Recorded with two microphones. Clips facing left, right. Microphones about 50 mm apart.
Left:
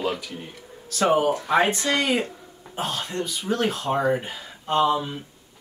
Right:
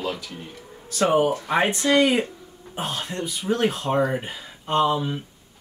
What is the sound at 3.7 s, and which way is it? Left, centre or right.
Speech, centre.